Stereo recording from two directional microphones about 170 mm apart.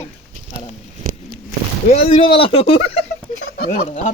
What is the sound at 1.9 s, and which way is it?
Speech, 35° left (ahead or behind).